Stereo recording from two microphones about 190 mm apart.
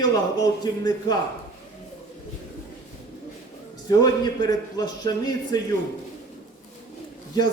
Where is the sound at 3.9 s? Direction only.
20° left (ahead or behind).